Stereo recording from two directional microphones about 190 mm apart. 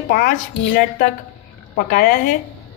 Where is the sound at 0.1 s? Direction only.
50° left (ahead or behind).